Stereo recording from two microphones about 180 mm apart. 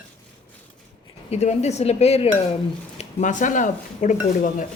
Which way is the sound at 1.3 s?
40° left (ahead or behind).